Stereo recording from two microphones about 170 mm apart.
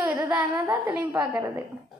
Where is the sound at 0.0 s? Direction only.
10° right (ahead or behind).